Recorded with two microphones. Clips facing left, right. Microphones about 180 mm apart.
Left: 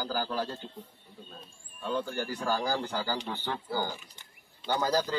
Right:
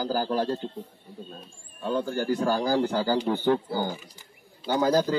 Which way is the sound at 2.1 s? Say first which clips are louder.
Right 7 dB; 45° right (ahead or behind).